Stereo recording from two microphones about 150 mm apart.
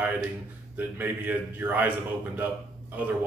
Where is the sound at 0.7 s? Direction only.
15° right (ahead or behind).